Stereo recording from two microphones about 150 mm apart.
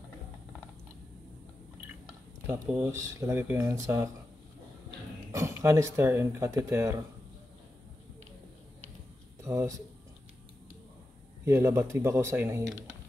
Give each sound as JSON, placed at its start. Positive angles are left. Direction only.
{"t": 2.7, "sound": "speech", "side_deg": -15}
{"t": 5.3, "sound": "speech", "side_deg": -20}
{"t": 9.4, "sound": "speech", "side_deg": -20}
{"t": 11.4, "sound": "speech", "side_deg": -15}